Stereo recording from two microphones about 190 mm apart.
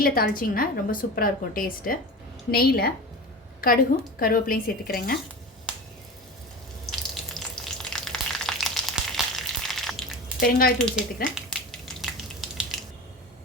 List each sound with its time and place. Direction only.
0.0 s a woman's voice: 50° left (ahead or behind)
5.7 s finger snapping: 5° right (ahead or behind)
6.8 s frying: centre (ahead or behind)
10.4 s a woman's voice: 50° left (ahead or behind)
10.8 s speech: centre (ahead or behind)